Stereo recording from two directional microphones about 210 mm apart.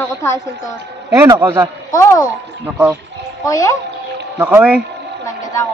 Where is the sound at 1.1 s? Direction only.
15° right (ahead or behind).